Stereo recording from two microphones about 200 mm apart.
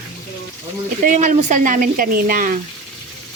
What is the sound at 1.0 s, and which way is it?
Speech, 40° right (ahead or behind).